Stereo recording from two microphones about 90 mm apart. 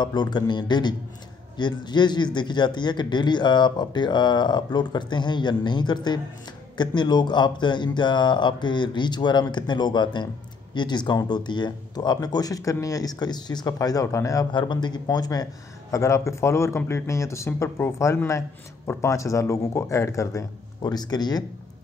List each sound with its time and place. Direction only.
0.0 s a man's voice: 55° left (ahead or behind); by 14.5 s 40° left (ahead or behind)
14.5 s a man's voice: 55° left (ahead or behind)
15.9 s speech: 35° left (ahead or behind)